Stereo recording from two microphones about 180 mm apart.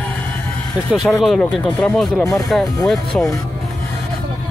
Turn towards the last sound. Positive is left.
turn(degrees=0)  # may be behind; listen again after turning